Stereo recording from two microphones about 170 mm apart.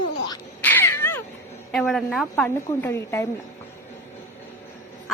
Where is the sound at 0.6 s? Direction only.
10° left (ahead or behind).